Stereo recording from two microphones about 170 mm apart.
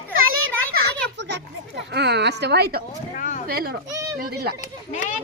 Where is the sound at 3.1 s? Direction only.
50° left (ahead or behind).